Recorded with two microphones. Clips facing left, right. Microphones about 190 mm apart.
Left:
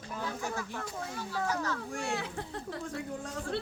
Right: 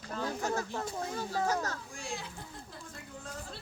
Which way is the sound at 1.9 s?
70° left (ahead or behind).